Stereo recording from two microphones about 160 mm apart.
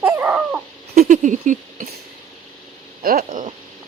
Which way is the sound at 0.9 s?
45° right (ahead or behind).